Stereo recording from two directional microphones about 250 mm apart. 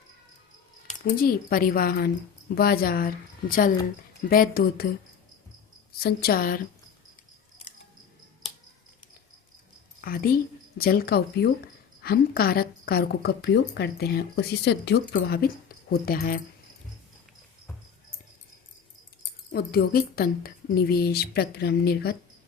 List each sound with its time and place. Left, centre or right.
1.0 s a woman's voice: left
4.3 s a woman's voice: left
6.0 s a woman's voice: left
10.0 s a woman's voice: left
19.5 s a woman's voice: left